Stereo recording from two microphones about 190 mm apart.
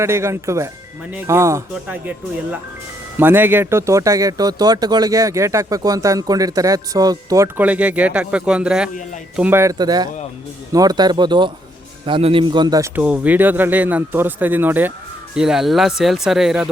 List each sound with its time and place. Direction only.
0.0 s speech: 15° right (ahead or behind)
13.0 s speech: 5° right (ahead or behind)